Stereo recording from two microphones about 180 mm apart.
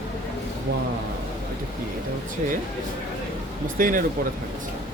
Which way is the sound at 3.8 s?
50° right (ahead or behind).